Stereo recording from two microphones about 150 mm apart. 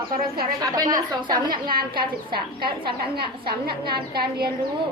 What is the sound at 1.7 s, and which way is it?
Speech, 80° right.